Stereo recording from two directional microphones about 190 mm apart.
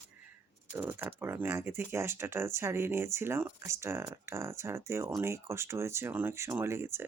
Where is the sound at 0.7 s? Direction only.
10° right (ahead or behind).